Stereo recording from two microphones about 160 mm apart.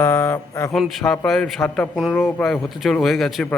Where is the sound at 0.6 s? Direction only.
Centre (ahead or behind).